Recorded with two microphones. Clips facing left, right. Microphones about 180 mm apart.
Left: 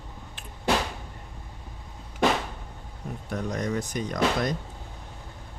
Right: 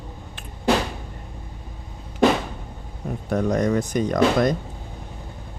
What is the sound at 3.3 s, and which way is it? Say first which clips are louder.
Speech: right 8 dB; 55° right (ahead or behind).